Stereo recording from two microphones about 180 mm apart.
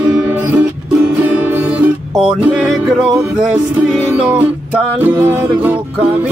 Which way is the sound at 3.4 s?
5° right (ahead or behind).